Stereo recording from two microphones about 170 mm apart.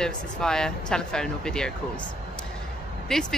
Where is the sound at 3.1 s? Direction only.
5° left (ahead or behind).